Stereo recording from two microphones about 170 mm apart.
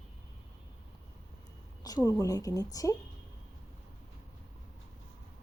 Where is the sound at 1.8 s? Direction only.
20° left (ahead or behind).